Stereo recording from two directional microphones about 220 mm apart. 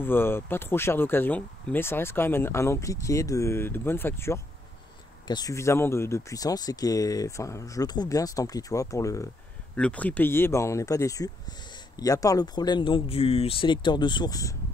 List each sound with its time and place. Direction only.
0.0 s speech: 10° left (ahead or behind)